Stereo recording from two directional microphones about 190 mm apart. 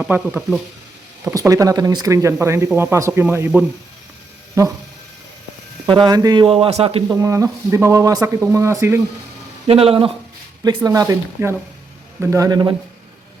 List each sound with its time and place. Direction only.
0.0 s speech: 5° right (ahead or behind)
1.2 s speech: 15° right (ahead or behind)
5.8 s speech: 20° right (ahead or behind)
7.2 s speech: 15° right (ahead or behind)
9.6 s speech: 30° right (ahead or behind)
10.8 s speech: 15° right (ahead or behind)